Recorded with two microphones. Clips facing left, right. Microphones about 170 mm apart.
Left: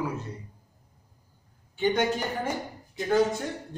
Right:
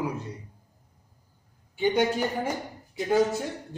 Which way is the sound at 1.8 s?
10° right (ahead or behind).